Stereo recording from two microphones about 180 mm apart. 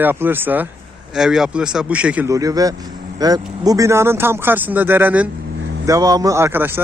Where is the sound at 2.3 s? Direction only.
20° right (ahead or behind).